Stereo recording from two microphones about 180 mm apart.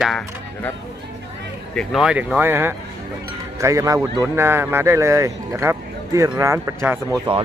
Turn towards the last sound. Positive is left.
turn(degrees=-35)  # may be behind; listen again after turning